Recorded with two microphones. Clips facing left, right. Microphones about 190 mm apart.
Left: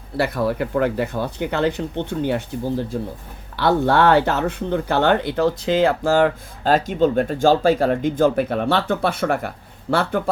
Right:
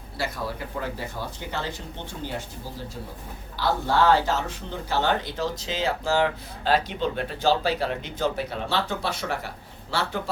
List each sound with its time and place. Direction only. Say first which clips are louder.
0.2 s a man's voice: left 10 dB; 65° left (ahead or behind)